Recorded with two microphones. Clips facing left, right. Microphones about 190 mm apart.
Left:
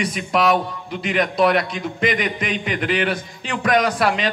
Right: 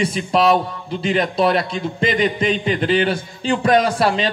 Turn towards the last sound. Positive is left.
turn(degrees=-30)  # may be behind; listen again after turning